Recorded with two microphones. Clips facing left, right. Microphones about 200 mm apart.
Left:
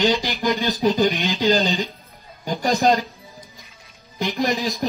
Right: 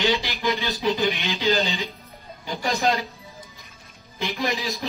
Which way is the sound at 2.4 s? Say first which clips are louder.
Left 5 dB; 45° left (ahead or behind).